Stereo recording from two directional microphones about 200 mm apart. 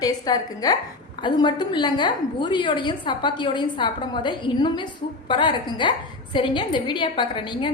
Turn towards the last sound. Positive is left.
turn(degrees=25)  # may be behind; listen again after turning